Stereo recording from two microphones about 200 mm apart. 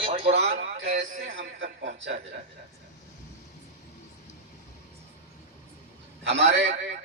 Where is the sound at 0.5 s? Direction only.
45° right (ahead or behind).